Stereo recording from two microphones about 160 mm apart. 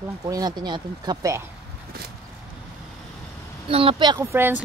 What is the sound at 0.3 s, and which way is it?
Speech, 25° right (ahead or behind).